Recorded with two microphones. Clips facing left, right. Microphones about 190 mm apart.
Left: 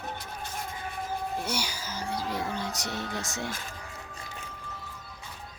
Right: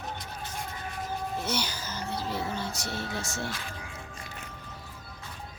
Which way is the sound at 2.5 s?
15° left (ahead or behind).